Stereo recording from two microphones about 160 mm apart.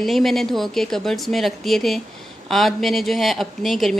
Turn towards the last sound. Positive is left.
turn(degrees=0)  # may be behind; listen again after turning